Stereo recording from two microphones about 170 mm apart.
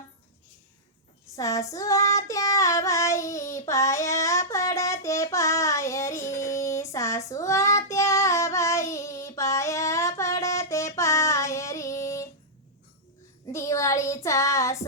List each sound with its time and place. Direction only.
1.4 s child singing: 20° left (ahead or behind)
13.5 s child singing: 15° left (ahead or behind)